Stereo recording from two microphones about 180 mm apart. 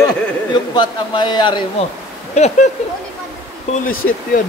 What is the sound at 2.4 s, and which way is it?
Speech, 40° left (ahead or behind).